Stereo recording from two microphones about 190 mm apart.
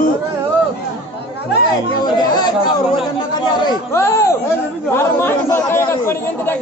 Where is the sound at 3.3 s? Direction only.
20° left (ahead or behind).